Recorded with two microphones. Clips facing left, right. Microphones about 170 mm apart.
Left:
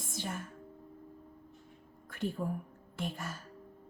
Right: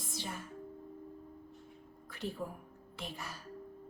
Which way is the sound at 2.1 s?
50° left (ahead or behind).